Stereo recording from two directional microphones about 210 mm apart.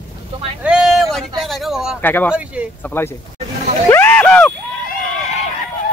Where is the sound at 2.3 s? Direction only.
5° right (ahead or behind).